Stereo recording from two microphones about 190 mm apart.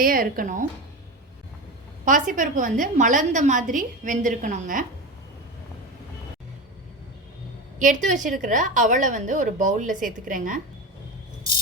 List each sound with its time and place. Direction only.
0.0 s a woman's voice: 50° right (ahead or behind)
2.0 s a woman's voice: 40° right (ahead or behind)
7.8 s a woman's voice: 40° right (ahead or behind)